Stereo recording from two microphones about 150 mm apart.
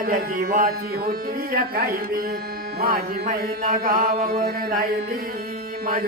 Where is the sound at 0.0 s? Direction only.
70° right (ahead or behind).